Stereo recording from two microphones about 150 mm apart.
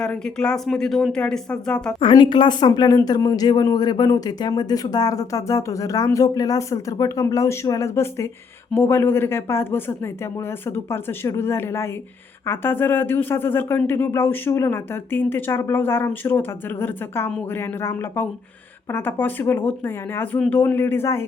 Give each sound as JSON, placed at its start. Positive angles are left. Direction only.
{"t": 0.0, "sound": "speech", "side_deg": 5}
{"t": 2.0, "sound": "speech", "side_deg": 35}
{"t": 10.8, "sound": "speech", "side_deg": 15}